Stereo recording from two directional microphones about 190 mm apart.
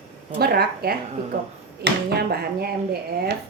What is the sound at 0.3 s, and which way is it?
A woman's voice, 55° right (ahead or behind).